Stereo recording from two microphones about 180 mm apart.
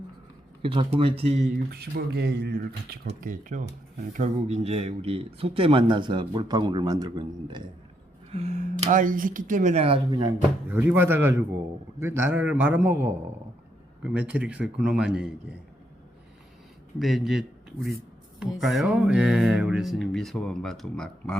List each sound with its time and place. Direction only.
0.6 s speech: 30° right (ahead or behind)
1.7 s speech: 60° right (ahead or behind); by 7.6 s 25° right (ahead or behind)
8.3 s speech: 35° right (ahead or behind)
10.7 s a man's voice: 10° right (ahead or behind)
17.0 s a man's voice: centre (ahead or behind)